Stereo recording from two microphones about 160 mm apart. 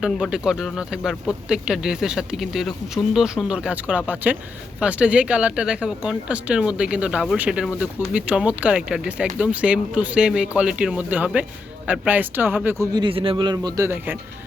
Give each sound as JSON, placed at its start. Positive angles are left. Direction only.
{"t": 0.0, "sound": "speech", "side_deg": -5}
{"t": 12.9, "sound": "a man's voice", "side_deg": -30}